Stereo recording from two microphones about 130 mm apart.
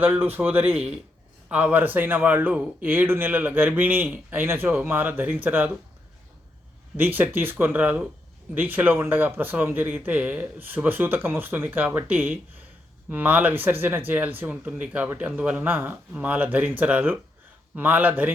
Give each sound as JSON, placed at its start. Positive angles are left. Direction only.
{"t": 0.0, "sound": "speech", "side_deg": -15}
{"t": 6.9, "sound": "speech", "side_deg": -15}